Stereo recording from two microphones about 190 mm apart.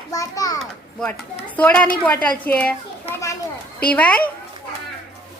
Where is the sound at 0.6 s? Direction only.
5° left (ahead or behind).